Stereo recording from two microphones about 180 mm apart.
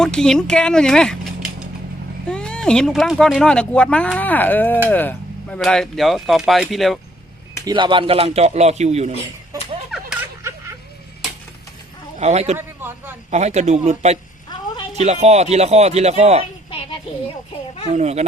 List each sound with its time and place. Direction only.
0.0 s speech: 5° left (ahead or behind)
7.6 s speech: 25° right (ahead or behind)
12.2 s speech: 35° right (ahead or behind)
12.5 s a sound: 10° right (ahead or behind)
13.3 s speech: 40° right (ahead or behind)
17.9 s speech: 40° right (ahead or behind)